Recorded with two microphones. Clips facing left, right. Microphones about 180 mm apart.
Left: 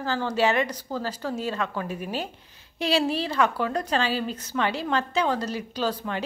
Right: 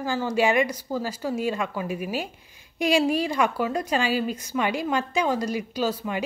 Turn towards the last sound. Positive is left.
turn(degrees=-10)  # may be behind; listen again after turning